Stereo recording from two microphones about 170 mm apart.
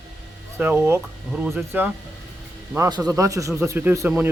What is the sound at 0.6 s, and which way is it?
Speech, 10° right (ahead or behind).